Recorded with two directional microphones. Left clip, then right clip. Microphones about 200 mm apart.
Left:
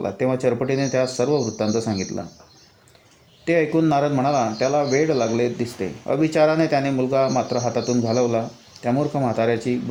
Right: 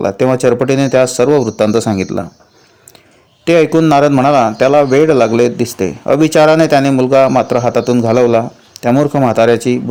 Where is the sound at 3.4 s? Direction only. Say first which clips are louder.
Right 10 dB; 45° right (ahead or behind).